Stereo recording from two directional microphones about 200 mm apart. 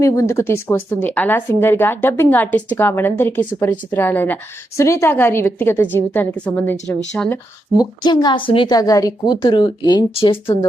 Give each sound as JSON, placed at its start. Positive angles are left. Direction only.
{"t": 0.0, "sound": "speech", "side_deg": 15}
{"t": 7.8, "sound": "a woman's voice", "side_deg": 20}